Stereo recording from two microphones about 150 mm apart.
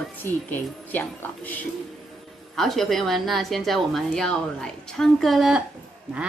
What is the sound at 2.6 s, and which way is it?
A woman's voice, centre (ahead or behind).